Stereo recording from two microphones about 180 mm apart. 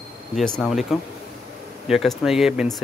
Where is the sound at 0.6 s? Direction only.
Centre (ahead or behind).